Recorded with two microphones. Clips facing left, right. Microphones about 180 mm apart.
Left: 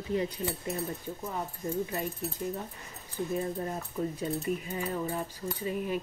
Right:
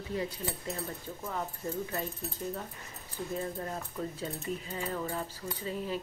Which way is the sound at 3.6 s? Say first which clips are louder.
Left 4 dB; 15° left (ahead or behind).